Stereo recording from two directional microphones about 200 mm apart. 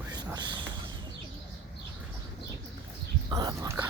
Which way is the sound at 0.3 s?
25° right (ahead or behind).